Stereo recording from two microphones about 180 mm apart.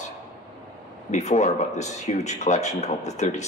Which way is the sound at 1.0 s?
40° left (ahead or behind).